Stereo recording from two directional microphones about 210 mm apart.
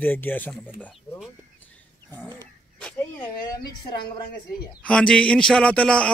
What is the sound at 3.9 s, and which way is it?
Speech, 20° left (ahead or behind).